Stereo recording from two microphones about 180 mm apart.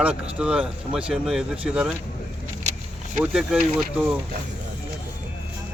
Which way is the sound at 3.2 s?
5° right (ahead or behind).